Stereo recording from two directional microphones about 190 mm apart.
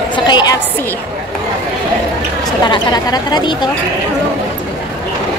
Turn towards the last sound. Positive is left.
turn(degrees=20)  # may be behind; listen again after turning